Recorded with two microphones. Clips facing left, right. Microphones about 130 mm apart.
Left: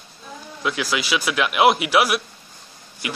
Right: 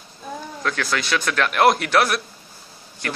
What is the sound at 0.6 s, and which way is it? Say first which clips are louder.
Speech: left 1 dB; 10° left (ahead or behind).